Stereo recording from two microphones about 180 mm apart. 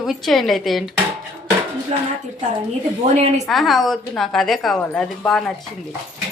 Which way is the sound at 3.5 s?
Centre (ahead or behind).